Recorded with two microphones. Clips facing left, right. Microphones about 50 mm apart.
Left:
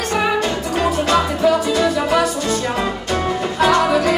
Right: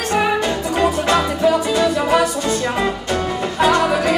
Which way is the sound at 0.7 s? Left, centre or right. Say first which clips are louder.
Even; right.